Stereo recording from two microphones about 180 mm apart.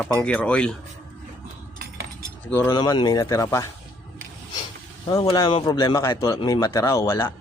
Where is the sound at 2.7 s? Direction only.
25° left (ahead or behind).